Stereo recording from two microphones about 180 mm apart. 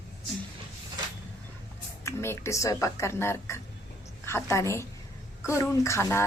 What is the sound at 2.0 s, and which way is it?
Speech, 15° left (ahead or behind).